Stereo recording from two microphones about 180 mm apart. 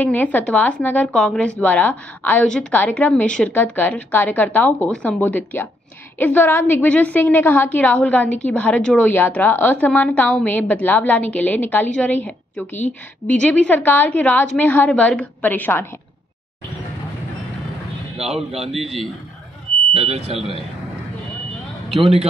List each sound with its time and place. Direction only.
0.0 s a woman's voice: 10° left (ahead or behind)
18.2 s a man's voice: centre (ahead or behind)
19.9 s speech: 35° right (ahead or behind)